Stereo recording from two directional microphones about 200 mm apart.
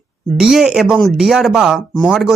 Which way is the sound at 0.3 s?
5° right (ahead or behind).